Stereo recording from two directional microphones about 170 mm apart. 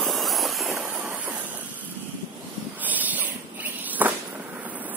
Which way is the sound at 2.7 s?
10° right (ahead or behind).